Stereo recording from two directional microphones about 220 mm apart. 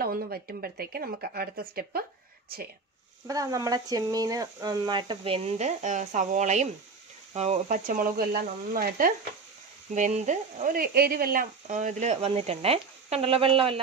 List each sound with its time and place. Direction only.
0.0 s speech: 45° right (ahead or behind)
3.3 s speech: 15° right (ahead or behind)